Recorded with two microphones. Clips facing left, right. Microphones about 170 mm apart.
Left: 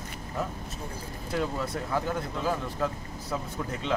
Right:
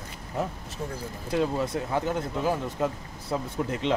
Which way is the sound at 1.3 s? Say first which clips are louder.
Right 4 dB; 20° right (ahead or behind).